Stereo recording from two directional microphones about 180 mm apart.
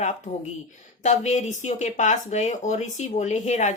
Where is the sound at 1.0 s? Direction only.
40° left (ahead or behind).